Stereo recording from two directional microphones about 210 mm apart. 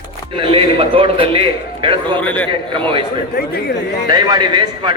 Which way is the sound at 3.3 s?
45° left (ahead or behind).